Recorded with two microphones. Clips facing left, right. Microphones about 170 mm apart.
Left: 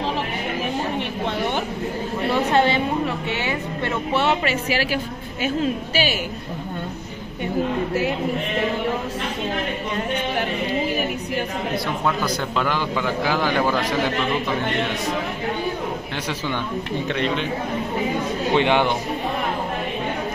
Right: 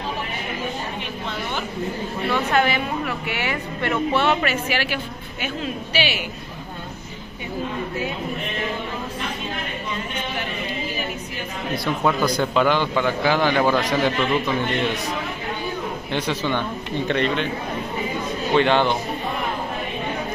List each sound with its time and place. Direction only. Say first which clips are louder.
2.3 s a woman's voice: left 2 dB; 30° left (ahead or behind)
12.4 s a man's voice: right 4 dB; centre (ahead or behind)
16.3 s a man's voice: right 1 dB; 10° left (ahead or behind)
18.5 s speech: right 1 dB; 15° left (ahead or behind)